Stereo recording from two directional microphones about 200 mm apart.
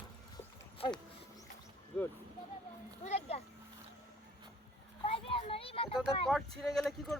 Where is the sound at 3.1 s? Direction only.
30° left (ahead or behind).